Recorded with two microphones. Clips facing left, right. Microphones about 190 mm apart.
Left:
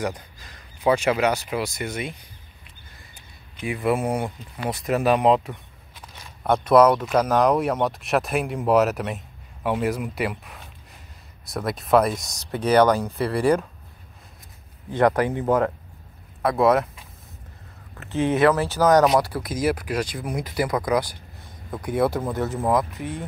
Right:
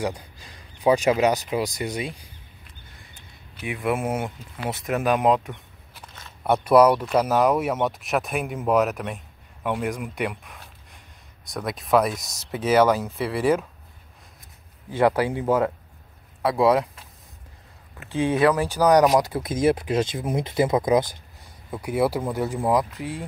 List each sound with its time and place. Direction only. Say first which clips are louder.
0.8 s speech: right 1 dB; 15° right (ahead or behind)
3.5 s speech: left 2 dB; centre (ahead or behind)
14.9 s speech: left 1 dB; 10° right (ahead or behind)
17.9 s speech: left 1 dB; 15° right (ahead or behind)
21.6 s speech: even; 10° right (ahead or behind)